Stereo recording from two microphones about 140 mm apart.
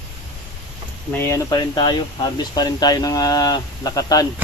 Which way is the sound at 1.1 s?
20° left (ahead or behind).